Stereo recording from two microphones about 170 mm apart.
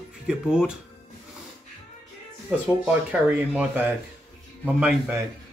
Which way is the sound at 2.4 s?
5° right (ahead or behind).